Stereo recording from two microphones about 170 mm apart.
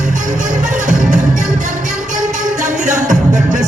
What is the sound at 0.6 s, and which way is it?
Music, 50° right (ahead or behind).